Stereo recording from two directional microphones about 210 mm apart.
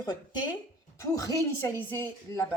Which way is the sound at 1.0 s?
15° left (ahead or behind).